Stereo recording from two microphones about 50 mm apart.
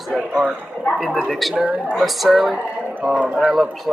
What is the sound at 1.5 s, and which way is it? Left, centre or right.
Speech, right.